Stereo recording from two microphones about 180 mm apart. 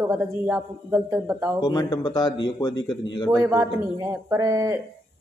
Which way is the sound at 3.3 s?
15° right (ahead or behind).